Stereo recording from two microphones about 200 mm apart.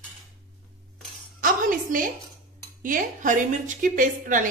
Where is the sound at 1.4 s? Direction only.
45° right (ahead or behind).